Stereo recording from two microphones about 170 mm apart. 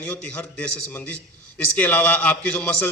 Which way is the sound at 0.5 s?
10° left (ahead or behind).